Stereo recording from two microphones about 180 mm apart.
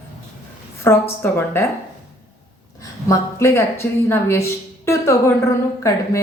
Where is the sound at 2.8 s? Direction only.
15° left (ahead or behind).